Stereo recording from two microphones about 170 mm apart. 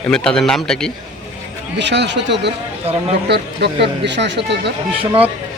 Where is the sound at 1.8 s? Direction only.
90° right.